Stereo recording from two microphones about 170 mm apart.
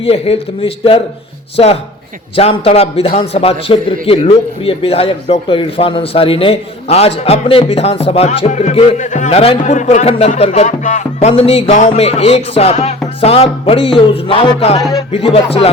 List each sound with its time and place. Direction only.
0.0 s a man's voice: 35° left (ahead or behind)